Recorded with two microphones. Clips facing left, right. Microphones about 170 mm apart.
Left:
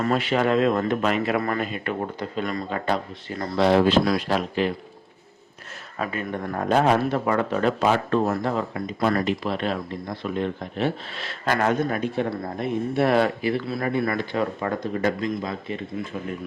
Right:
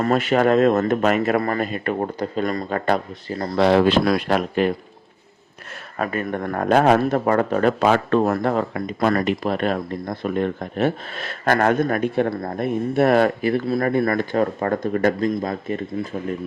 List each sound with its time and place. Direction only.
0.0 s speech: 45° right (ahead or behind)
3.2 s speech: 35° right (ahead or behind)
3.6 s speech: 65° right (ahead or behind)
6.0 s speech: 50° right (ahead or behind)